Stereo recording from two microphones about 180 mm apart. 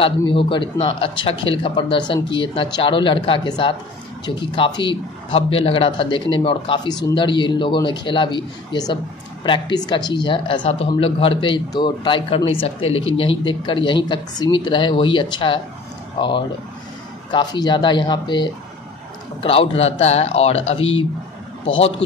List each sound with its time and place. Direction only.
0.0 s speech: 30° left (ahead or behind)